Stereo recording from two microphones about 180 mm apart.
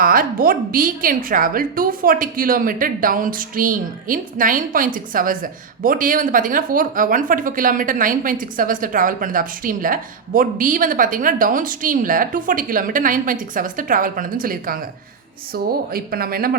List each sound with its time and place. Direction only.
0.0 s speech: 50° right (ahead or behind)